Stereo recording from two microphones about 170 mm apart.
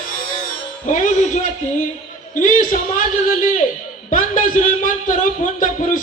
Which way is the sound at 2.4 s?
50° left (ahead or behind).